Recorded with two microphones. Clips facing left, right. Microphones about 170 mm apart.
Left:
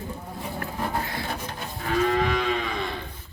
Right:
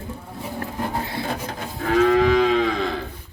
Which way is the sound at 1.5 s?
85° right.